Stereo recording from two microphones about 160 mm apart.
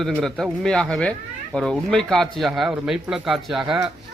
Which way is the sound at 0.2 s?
5° left (ahead or behind).